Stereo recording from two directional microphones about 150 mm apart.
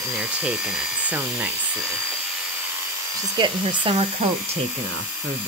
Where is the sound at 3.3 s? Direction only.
30° right (ahead or behind).